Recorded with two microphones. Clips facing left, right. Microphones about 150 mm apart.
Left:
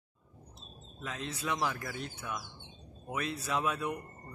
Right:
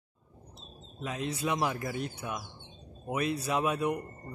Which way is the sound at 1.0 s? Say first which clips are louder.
Right 5 dB; 15° right (ahead or behind).